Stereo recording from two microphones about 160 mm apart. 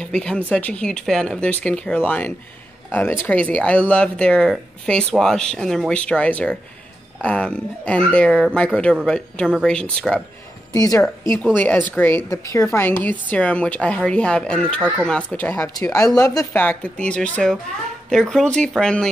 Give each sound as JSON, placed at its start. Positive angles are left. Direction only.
{"t": 0.0, "sound": "a woman's voice", "side_deg": 5}
{"t": 10.7, "sound": "a woman's voice", "side_deg": 20}